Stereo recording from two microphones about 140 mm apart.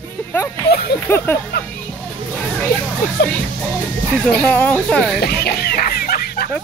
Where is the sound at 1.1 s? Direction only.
15° left (ahead or behind).